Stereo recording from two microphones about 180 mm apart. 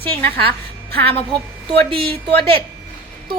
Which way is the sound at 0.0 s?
10° left (ahead or behind).